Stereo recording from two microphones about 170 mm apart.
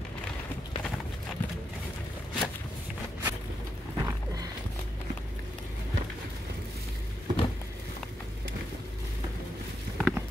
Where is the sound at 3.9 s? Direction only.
20° right (ahead or behind).